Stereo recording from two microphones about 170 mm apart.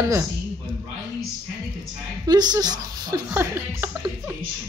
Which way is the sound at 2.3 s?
25° right (ahead or behind).